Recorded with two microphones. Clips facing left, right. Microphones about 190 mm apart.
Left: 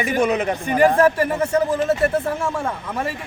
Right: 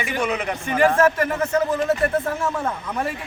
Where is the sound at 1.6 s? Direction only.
10° left (ahead or behind).